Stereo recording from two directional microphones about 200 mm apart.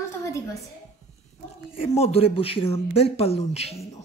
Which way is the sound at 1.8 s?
30° left (ahead or behind).